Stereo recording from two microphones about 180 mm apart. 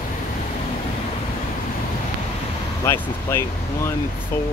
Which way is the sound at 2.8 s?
15° left (ahead or behind).